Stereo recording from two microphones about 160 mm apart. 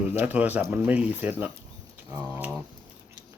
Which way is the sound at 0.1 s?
10° right (ahead or behind).